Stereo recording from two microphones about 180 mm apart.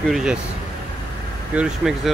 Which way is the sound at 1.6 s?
Centre (ahead or behind).